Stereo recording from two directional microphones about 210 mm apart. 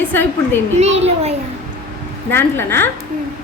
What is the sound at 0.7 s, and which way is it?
Speech, 30° right (ahead or behind).